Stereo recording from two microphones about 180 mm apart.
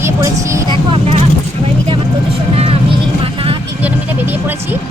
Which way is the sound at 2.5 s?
35° right (ahead or behind).